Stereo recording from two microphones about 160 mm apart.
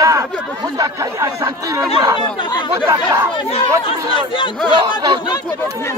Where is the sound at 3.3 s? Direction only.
35° left (ahead or behind).